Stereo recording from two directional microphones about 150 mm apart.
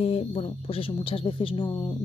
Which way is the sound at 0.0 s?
35° left (ahead or behind).